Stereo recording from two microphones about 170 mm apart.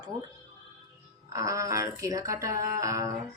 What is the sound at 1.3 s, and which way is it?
Speech, 20° right (ahead or behind).